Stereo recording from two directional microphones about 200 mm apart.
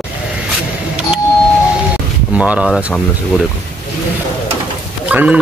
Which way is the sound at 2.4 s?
5° right (ahead or behind).